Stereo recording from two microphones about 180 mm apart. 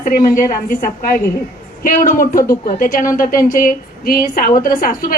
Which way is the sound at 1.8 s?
50° left (ahead or behind).